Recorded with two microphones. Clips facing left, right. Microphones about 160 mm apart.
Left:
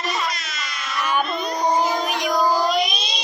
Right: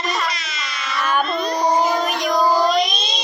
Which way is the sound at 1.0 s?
15° left (ahead or behind).